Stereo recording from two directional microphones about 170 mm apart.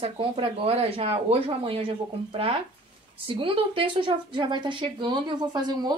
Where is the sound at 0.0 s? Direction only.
35° right (ahead or behind).